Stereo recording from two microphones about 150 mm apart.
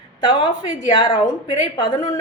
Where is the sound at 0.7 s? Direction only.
30° left (ahead or behind).